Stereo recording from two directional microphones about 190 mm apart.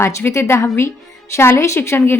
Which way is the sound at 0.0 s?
15° left (ahead or behind).